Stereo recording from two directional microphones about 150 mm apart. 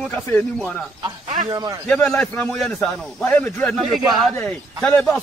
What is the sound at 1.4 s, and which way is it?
Speech, 25° right (ahead or behind).